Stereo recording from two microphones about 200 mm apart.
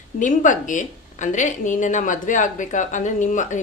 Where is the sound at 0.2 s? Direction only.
40° left (ahead or behind).